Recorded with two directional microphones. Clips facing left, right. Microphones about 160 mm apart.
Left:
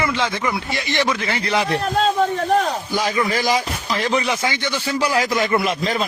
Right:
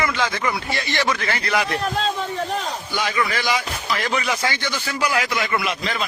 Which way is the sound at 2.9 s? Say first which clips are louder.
Left 3 dB; 35° left (ahead or behind).